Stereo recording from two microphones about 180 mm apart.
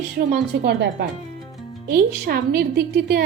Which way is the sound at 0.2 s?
60° right (ahead or behind).